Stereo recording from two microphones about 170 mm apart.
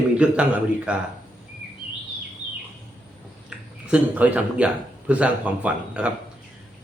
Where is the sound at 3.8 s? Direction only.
10° right (ahead or behind).